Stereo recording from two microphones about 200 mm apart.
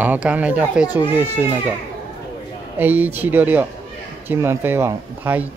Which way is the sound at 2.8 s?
10° right (ahead or behind).